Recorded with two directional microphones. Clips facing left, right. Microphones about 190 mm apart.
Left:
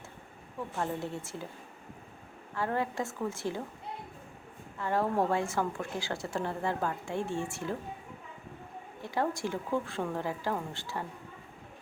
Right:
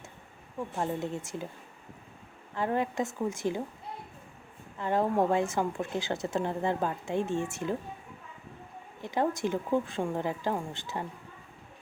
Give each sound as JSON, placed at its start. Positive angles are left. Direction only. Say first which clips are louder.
{"t": 0.8, "sound": "a woman's voice", "louder": "right 2 dB", "side_deg": -20}
{"t": 2.6, "sound": "a woman's voice", "louder": "right 3 dB", "side_deg": -20}
{"t": 4.8, "sound": "speech", "louder": "right 2 dB", "side_deg": -20}
{"t": 9.0, "sound": "speech", "louder": "right 3 dB", "side_deg": -20}